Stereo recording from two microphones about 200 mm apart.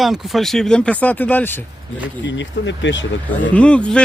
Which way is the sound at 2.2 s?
65° left (ahead or behind).